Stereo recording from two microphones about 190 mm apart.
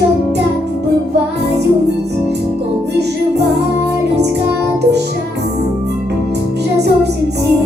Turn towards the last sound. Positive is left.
turn(degrees=-60)  # may be behind; listen again after turning